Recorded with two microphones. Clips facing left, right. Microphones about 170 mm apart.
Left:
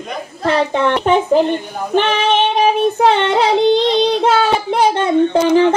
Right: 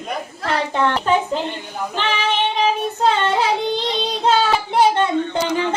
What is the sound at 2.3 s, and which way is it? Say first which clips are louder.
Child singing: left 6 dB; 70° left (ahead or behind).